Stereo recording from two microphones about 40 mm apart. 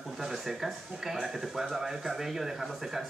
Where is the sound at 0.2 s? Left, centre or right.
Centre.